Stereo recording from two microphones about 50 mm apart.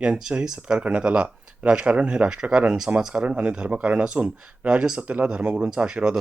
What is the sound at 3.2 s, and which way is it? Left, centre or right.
Speech, right.